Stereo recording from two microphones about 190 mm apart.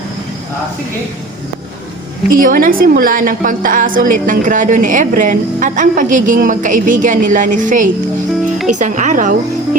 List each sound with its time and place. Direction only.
2.3 s a woman's voice: 45° right (ahead or behind)